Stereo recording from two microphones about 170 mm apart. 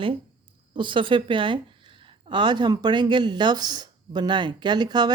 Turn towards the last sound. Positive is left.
turn(degrees=-25)  # may be behind; listen again after turning